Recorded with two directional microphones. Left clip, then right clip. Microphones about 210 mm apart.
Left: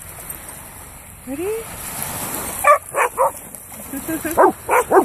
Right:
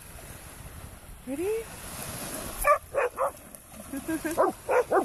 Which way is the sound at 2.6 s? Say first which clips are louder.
Left 10 dB; centre (ahead or behind).